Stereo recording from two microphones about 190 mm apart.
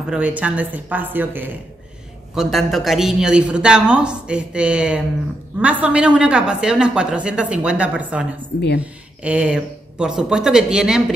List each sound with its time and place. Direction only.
0.1 s a woman's voice: 5° right (ahead or behind)
8.5 s a woman's voice: 60° left (ahead or behind)
9.2 s a woman's voice: 5° right (ahead or behind)